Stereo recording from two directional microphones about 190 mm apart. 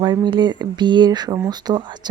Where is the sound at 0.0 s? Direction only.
25° right (ahead or behind).